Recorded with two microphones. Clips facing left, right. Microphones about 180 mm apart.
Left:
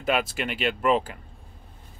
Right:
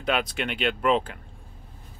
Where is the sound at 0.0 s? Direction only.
5° left (ahead or behind).